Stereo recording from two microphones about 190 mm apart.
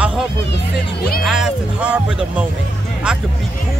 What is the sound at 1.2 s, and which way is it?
Speech, centre (ahead or behind).